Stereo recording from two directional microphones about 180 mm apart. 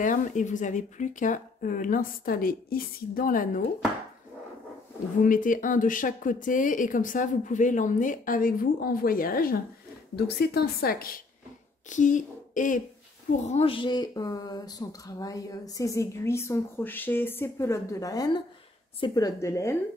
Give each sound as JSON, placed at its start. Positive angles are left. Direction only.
{"t": 0.0, "sound": "speech", "side_deg": 45}
{"t": 5.2, "sound": "a woman's voice", "side_deg": 50}
{"t": 11.9, "sound": "a woman's voice", "side_deg": 45}